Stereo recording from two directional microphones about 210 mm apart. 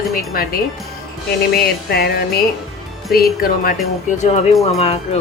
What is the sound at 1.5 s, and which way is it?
Music, 50° left (ahead or behind).